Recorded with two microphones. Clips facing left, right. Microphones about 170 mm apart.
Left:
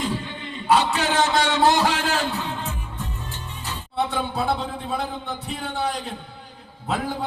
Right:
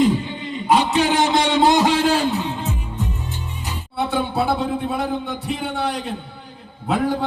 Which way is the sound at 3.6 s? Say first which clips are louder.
Left 2 dB; 15° right (ahead or behind).